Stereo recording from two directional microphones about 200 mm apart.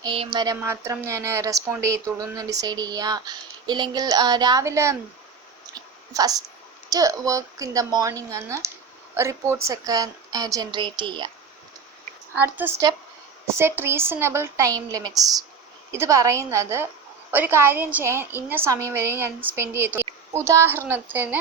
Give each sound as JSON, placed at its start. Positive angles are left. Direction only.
{"t": 0.0, "sound": "speech", "side_deg": -25}
{"t": 0.3, "sound": "a woman's voice", "side_deg": -15}
{"t": 5.7, "sound": "whispering", "side_deg": -20}
{"t": 6.9, "sound": "a woman's voice", "side_deg": -15}
{"t": 12.3, "sound": "a woman's voice", "side_deg": -10}